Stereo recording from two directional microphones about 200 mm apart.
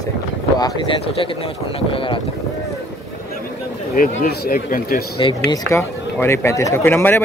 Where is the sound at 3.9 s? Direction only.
45° left (ahead or behind).